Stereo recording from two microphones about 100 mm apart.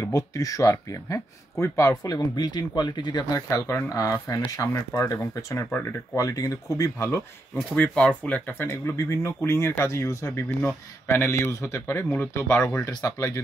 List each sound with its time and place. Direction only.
0.0 s speech: 35° left (ahead or behind)
7.7 s speech: 10° left (ahead or behind)
8.5 s speech: 25° left (ahead or behind)